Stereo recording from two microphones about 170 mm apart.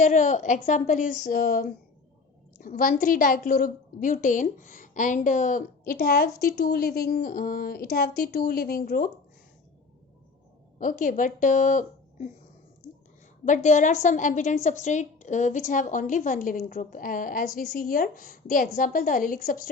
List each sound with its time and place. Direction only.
0.0 s a woman's voice: 45° left (ahead or behind)
10.8 s a woman's voice: 50° left (ahead or behind)
13.4 s a woman's voice: 45° left (ahead or behind)